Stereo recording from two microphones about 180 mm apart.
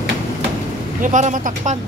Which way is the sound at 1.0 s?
45° right (ahead or behind).